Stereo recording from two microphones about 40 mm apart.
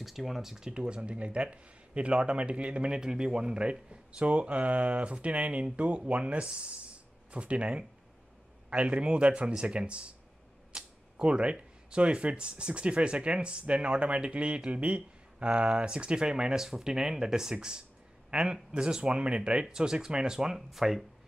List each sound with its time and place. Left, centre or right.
0.0 s speech: centre; by 10.1 s right
10.7 s a sound: right
12.0 s speech: right; by 21.0 s centre